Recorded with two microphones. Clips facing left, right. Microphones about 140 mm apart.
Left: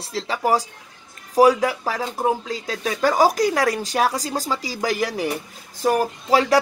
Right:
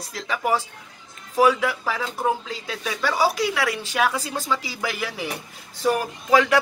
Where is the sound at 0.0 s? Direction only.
30° left (ahead or behind).